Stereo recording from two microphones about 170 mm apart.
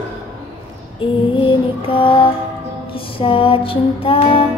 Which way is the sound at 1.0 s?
30° left (ahead or behind).